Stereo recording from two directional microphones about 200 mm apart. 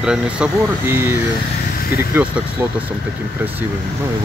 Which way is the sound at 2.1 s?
10° right (ahead or behind).